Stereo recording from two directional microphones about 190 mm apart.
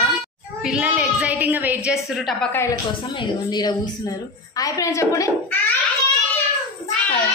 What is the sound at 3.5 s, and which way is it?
A woman's voice, 20° left (ahead or behind).